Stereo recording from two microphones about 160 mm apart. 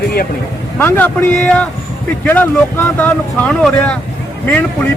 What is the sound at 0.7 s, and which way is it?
Speech, 10° left (ahead or behind).